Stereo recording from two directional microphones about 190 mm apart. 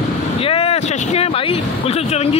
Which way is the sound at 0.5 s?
30° left (ahead or behind).